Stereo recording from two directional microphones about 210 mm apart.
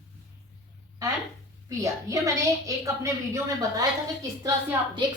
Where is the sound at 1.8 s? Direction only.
15° right (ahead or behind).